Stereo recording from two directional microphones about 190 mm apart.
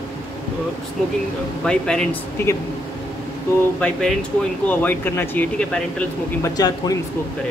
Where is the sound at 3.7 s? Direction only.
5° left (ahead or behind).